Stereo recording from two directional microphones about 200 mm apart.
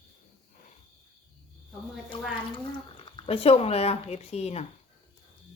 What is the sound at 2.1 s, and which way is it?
Speech, 25° left (ahead or behind).